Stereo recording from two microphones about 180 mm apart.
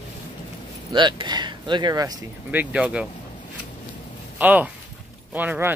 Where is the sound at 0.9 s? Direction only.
25° right (ahead or behind).